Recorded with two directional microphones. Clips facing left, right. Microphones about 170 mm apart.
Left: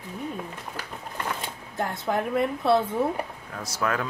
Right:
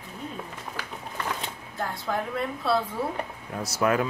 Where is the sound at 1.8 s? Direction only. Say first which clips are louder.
Left 3 dB; 20° left (ahead or behind).